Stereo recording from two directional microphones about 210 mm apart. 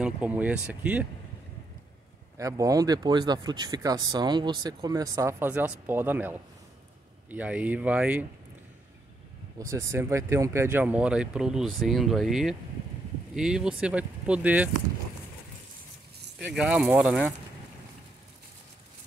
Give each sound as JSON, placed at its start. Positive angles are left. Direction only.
{"t": 0.0, "sound": "speech", "side_deg": -5}
{"t": 2.3, "sound": "speech", "side_deg": -15}
{"t": 9.6, "sound": "speech", "side_deg": -15}
{"t": 16.3, "sound": "speech", "side_deg": -5}